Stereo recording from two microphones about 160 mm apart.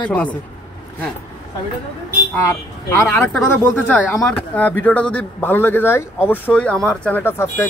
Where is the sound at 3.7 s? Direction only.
10° left (ahead or behind).